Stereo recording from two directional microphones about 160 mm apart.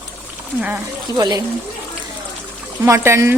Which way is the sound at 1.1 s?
25° right (ahead or behind).